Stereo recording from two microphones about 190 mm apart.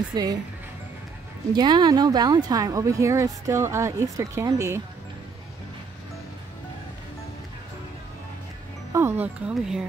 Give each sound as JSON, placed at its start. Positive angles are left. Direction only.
{"t": 0.1, "sound": "speech", "side_deg": -20}
{"t": 1.5, "sound": "speech", "side_deg": -25}
{"t": 8.9, "sound": "speech", "side_deg": -10}